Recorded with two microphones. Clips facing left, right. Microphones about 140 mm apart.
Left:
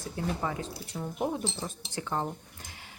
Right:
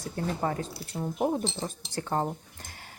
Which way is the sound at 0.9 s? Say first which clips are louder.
Right 4 dB; 20° right (ahead or behind).